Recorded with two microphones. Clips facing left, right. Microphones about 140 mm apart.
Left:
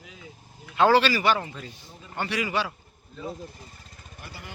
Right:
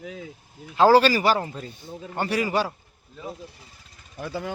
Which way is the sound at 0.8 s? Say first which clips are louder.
Right 4 dB; 35° right (ahead or behind).